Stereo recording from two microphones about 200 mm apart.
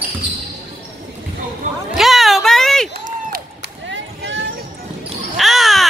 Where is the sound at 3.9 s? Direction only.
65° right (ahead or behind).